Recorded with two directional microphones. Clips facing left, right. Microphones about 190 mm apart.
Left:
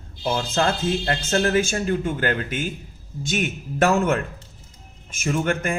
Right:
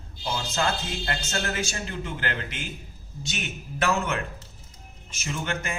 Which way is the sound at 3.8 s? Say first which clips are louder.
Left 7 dB; 45° left (ahead or behind).